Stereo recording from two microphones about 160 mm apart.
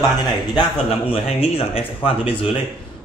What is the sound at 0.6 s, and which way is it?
A man's voice, 35° left (ahead or behind).